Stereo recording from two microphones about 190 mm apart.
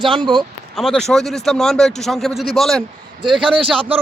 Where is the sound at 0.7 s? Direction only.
Centre (ahead or behind).